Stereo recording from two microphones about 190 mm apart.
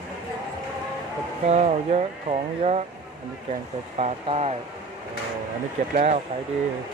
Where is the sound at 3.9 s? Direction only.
30° right (ahead or behind).